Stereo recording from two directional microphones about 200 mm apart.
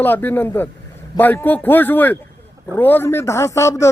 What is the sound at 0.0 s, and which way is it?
A man's voice, 10° left (ahead or behind).